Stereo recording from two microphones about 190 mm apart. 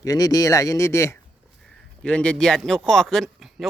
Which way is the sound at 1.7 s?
5° left (ahead or behind).